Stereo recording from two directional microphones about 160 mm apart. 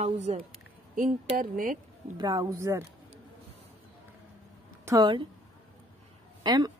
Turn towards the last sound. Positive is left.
turn(degrees=-25)  # may be behind; listen again after turning